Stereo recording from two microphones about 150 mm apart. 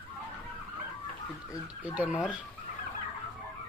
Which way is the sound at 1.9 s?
10° right (ahead or behind).